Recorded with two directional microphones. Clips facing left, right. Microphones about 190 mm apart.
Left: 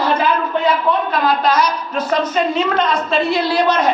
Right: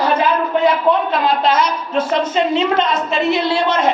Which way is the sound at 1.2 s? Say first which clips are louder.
Even; 25° right (ahead or behind).